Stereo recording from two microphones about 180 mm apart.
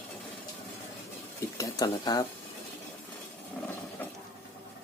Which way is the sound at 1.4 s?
20° left (ahead or behind).